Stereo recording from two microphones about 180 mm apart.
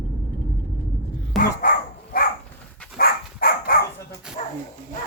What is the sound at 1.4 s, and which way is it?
Dog, 50° left (ahead or behind).